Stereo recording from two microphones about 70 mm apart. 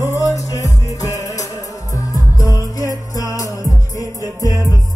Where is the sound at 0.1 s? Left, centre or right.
Left.